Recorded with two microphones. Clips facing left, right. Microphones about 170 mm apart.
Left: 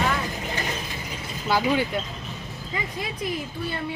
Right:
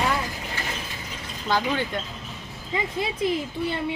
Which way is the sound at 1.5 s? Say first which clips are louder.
Left 2 dB; 10° left (ahead or behind).